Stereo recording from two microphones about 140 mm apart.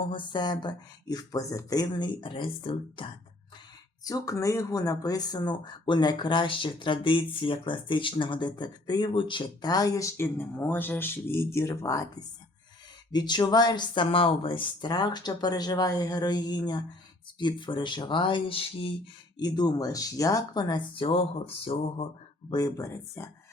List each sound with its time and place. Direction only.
0.0 s speech: 35° left (ahead or behind)
4.0 s speech: 25° left (ahead or behind); by 18.9 s 40° left (ahead or behind)
19.4 s speech: 30° left (ahead or behind)
22.4 s speech: 30° left (ahead or behind)